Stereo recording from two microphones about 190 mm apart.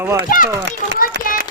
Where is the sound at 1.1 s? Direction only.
65° right (ahead or behind).